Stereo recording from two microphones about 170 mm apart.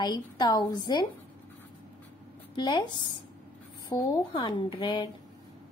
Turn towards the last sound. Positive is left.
turn(degrees=30)  # may be behind; listen again after turning